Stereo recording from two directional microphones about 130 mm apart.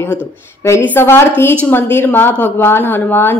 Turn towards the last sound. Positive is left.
turn(degrees=15)  # may be behind; listen again after turning